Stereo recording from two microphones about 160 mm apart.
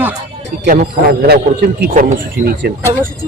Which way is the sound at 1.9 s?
60° right (ahead or behind).